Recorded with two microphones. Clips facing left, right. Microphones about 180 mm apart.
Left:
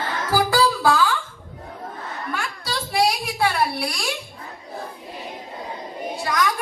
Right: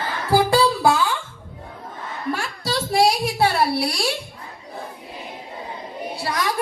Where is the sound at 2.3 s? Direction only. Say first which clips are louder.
Right 3 dB; 30° right (ahead or behind).